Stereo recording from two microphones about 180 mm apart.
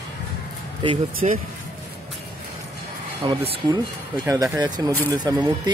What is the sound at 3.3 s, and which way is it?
Speech, 25° right (ahead or behind).